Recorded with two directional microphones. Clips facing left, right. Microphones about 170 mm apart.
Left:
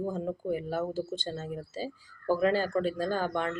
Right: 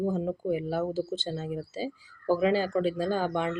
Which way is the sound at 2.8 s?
45° left (ahead or behind).